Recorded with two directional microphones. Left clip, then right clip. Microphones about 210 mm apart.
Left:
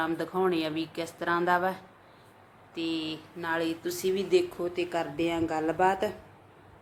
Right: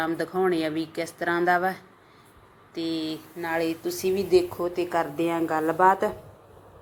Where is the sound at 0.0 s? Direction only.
10° right (ahead or behind).